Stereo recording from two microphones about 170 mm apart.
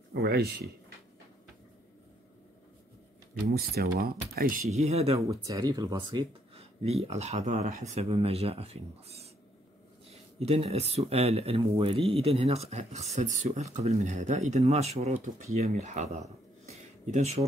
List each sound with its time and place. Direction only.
0.1 s speech: 65° right (ahead or behind)
3.5 s speech: 65° right (ahead or behind)
4.6 s speech: 40° right (ahead or behind)
5.3 s speech: 20° right (ahead or behind); by 7.8 s 45° right (ahead or behind)
7.9 s speech: 35° right (ahead or behind)